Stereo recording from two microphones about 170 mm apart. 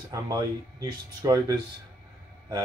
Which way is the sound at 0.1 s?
20° right (ahead or behind).